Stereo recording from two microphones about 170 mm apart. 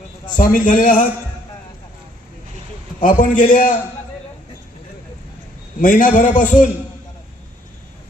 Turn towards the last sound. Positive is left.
turn(degrees=50)  # may be behind; listen again after turning